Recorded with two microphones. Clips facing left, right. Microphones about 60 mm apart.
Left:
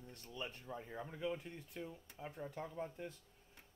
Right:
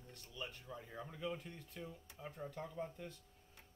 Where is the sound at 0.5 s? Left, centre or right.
Left.